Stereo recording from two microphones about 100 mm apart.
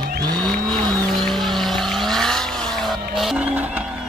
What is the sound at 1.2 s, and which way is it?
Vehicle, centre (ahead or behind).